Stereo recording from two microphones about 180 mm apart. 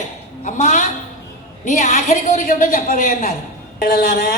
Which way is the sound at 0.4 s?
45° left (ahead or behind).